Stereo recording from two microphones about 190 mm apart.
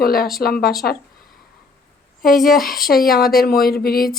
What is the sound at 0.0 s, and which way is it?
Speech, 50° left (ahead or behind).